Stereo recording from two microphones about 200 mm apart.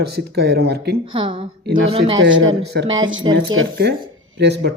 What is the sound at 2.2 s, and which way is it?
Speech, 70° right (ahead or behind).